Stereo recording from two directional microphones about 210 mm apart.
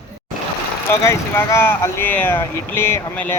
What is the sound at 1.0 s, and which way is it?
Speech, 15° left (ahead or behind).